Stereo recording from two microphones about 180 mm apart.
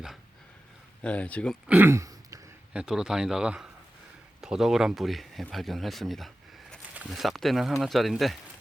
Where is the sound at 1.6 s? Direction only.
10° right (ahead or behind).